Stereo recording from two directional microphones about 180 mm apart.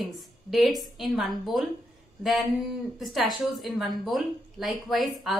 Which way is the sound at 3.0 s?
Centre (ahead or behind).